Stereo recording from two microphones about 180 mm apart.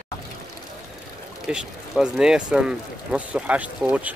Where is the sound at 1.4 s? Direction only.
5° right (ahead or behind).